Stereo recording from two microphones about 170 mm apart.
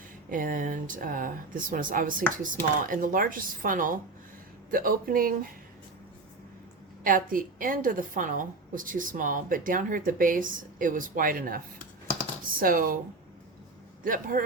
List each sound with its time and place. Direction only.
0.3 s a woman's voice: 50° right (ahead or behind)
7.0 s a woman's voice: 55° right (ahead or behind)
14.0 s a woman's voice: 55° right (ahead or behind)